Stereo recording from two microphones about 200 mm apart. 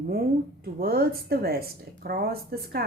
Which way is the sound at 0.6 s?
50° right (ahead or behind).